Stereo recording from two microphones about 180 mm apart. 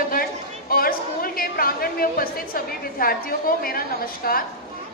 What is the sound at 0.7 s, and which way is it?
A woman's voice, 55° left (ahead or behind).